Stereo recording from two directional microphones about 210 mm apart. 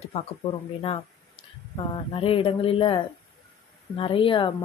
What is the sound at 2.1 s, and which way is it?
Speech, 25° left (ahead or behind).